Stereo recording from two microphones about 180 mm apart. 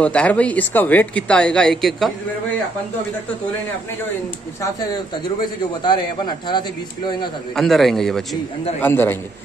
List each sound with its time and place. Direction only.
0.0 s speech: 5° left (ahead or behind)
5.4 s a man's voice: 25° left (ahead or behind)
7.5 s a man's voice: centre (ahead or behind)
8.8 s speech: 10° left (ahead or behind)